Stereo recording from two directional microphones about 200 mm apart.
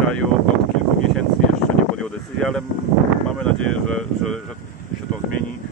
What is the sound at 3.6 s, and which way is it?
Speech, 90° right.